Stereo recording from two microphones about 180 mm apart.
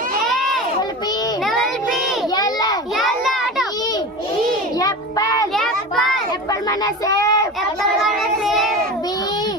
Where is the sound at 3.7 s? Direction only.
20° left (ahead or behind).